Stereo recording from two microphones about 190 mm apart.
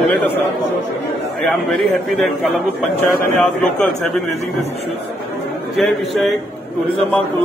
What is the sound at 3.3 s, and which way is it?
Speech, 5° left (ahead or behind).